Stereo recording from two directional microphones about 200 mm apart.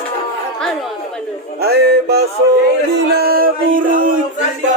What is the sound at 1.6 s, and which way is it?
Music, 50° right (ahead or behind).